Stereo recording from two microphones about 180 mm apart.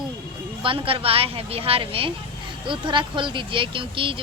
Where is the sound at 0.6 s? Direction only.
30° right (ahead or behind).